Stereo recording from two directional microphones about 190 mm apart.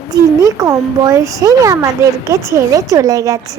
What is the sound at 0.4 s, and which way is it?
A child's voice, 15° right (ahead or behind).